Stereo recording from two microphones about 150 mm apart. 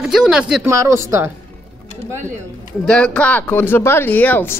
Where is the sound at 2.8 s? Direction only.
5° left (ahead or behind).